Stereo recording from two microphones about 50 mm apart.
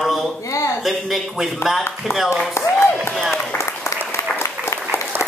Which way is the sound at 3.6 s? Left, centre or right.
Left.